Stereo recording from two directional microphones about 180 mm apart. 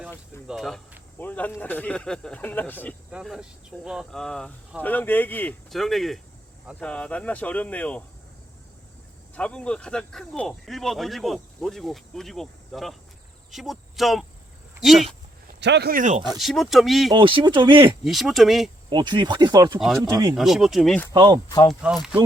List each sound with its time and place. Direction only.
0.4 s speech: centre (ahead or behind)
3.1 s speech: 5° right (ahead or behind)
9.3 s speech: 5° left (ahead or behind)
15.6 s speech: 70° right (ahead or behind); by 16.2 s 45° right (ahead or behind)
16.4 s speech: centre (ahead or behind)
17.1 s speech: 30° right (ahead or behind)
18.0 s speech: centre (ahead or behind)
18.9 s speech: 25° right (ahead or behind)
19.8 s speech: centre (ahead or behind)
21.1 s speech: 25° right (ahead or behind)
21.7 s speech: 5° right (ahead or behind)